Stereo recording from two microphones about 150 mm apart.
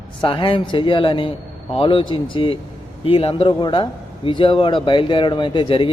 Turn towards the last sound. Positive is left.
turn(degrees=35)  # may be behind; listen again after turning